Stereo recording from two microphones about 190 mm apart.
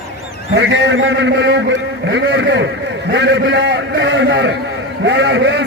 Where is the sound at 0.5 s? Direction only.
70° right (ahead or behind).